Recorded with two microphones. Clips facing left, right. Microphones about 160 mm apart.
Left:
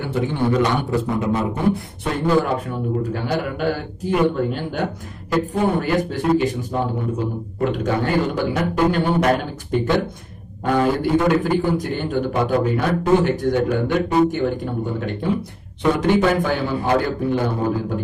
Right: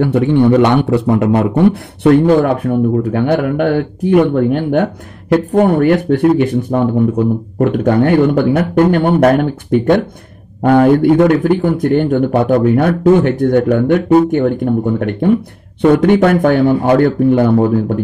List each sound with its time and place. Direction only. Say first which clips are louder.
0.0 s speech: right 11 dB; 65° right (ahead or behind)